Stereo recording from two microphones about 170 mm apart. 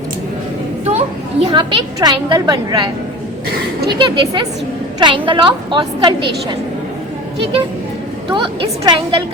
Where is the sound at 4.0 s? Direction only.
30° right (ahead or behind).